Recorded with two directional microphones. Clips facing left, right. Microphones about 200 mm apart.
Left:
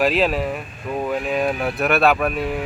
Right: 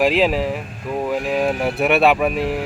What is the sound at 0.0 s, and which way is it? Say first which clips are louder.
Speech: right 2 dB; 15° right (ahead or behind).